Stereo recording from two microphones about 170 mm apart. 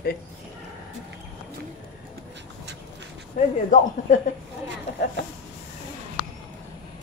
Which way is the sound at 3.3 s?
50° left (ahead or behind).